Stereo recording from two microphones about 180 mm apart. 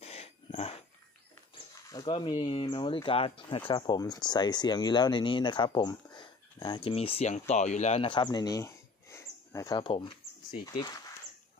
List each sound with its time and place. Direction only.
0.0 s dog: 35° left (ahead or behind)
1.5 s speech: 25° left (ahead or behind)